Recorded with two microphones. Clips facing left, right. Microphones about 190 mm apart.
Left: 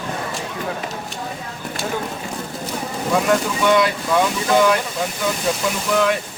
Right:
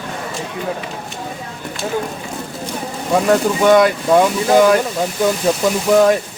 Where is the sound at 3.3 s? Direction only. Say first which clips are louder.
Right 7 dB; 45° right (ahead or behind).